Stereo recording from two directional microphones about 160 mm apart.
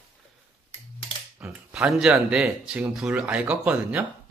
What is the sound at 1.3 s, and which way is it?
Speech, 10° right (ahead or behind).